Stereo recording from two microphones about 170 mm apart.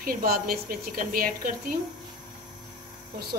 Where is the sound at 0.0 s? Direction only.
60° right (ahead or behind).